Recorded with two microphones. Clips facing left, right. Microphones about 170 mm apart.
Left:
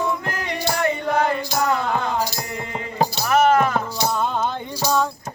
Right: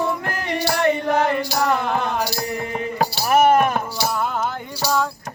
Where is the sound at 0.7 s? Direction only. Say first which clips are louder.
Right 2 dB; 65° right (ahead or behind).